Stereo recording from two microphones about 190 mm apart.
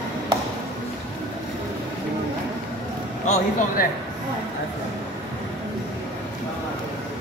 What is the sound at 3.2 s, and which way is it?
Speech, 40° left (ahead or behind).